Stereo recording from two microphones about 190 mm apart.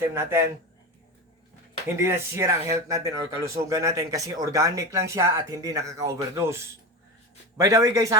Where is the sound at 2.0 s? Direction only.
15° right (ahead or behind).